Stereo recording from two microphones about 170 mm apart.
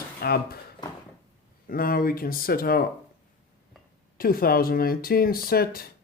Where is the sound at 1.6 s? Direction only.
60° left (ahead or behind).